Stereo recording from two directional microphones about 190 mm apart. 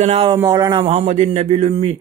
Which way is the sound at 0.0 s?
30° right (ahead or behind).